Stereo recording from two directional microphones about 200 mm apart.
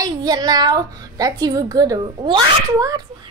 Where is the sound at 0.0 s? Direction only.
20° right (ahead or behind).